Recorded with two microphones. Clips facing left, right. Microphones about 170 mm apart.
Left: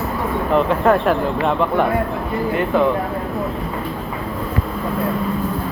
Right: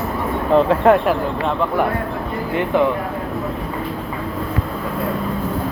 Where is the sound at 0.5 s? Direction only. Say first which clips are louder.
Right 3 dB; 30° right (ahead or behind).